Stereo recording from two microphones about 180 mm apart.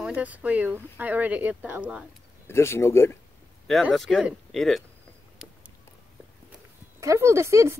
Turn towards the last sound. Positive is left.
turn(degrees=-15)  # may be behind; listen again after turning